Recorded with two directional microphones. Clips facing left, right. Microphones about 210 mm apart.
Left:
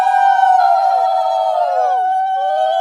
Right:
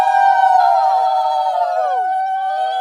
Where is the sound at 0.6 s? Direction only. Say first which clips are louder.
Left 1 dB; 55° left (ahead or behind).